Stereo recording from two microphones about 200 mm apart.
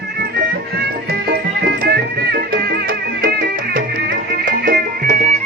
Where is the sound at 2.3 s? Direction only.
55° right (ahead or behind).